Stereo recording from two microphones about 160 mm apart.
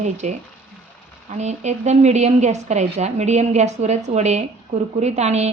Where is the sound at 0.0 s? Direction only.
45° right (ahead or behind).